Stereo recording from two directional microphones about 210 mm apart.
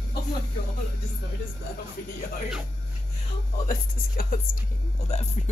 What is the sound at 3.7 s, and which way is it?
Speech, 40° left (ahead or behind).